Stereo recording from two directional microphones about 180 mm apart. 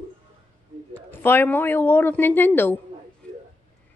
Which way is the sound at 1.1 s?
10° left (ahead or behind).